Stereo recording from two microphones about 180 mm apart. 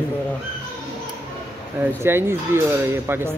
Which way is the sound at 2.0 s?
15° right (ahead or behind).